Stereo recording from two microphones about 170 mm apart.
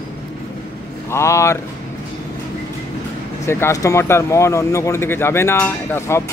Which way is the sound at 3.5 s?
15° left (ahead or behind).